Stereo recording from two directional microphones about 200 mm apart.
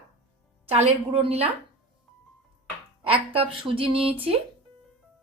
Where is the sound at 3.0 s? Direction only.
25° right (ahead or behind).